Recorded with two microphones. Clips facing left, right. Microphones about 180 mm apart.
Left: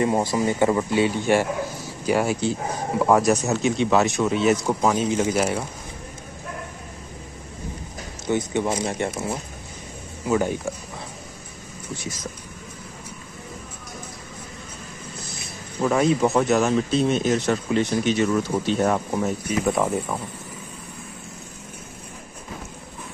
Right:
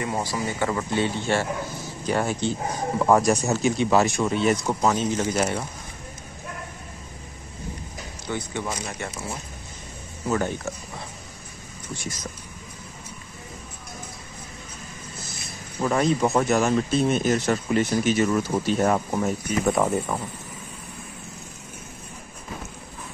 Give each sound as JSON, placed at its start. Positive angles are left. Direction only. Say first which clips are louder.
{"t": 0.0, "sound": "speech", "louder": "left 6 dB", "side_deg": 25}
{"t": 8.3, "sound": "speech", "louder": "left 7 dB", "side_deg": 20}
{"t": 10.2, "sound": "speech", "louder": "left 3 dB", "side_deg": 10}
{"t": 15.8, "sound": "speech", "louder": "left 2 dB", "side_deg": 0}